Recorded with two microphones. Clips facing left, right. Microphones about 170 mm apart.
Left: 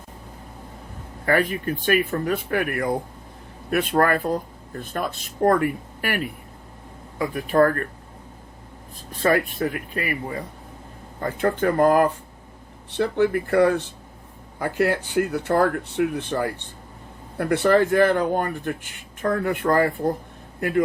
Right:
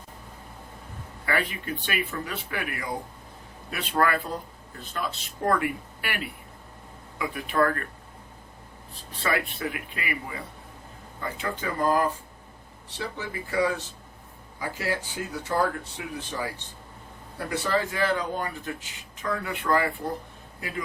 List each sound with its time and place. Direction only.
1.2 s speech: 45° left (ahead or behind)
9.2 s speech: 45° left (ahead or behind)
20.6 s a man's voice: 55° left (ahead or behind)